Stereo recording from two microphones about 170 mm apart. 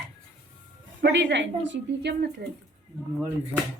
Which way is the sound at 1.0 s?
90° right.